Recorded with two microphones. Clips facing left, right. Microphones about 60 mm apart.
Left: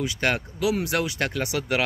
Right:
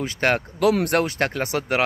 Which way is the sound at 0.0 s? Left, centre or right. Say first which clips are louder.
Right 3 dB; right.